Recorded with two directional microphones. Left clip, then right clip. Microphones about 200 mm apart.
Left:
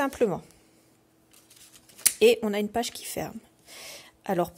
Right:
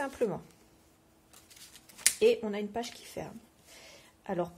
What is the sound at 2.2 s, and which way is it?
A woman's voice, 40° left (ahead or behind).